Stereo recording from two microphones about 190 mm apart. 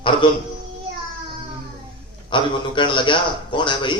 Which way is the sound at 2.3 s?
25° left (ahead or behind).